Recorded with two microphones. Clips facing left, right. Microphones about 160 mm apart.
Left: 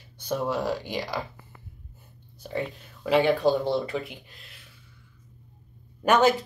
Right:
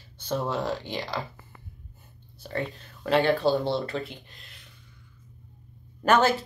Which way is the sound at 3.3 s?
15° left (ahead or behind).